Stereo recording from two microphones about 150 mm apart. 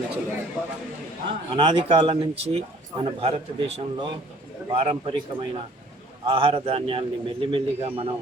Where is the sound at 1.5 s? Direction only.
35° right (ahead or behind).